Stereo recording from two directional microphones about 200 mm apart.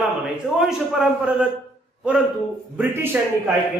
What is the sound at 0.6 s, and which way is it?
Speech, 5° right (ahead or behind).